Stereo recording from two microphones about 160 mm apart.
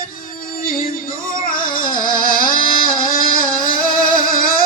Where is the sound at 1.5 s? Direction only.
60° left (ahead or behind).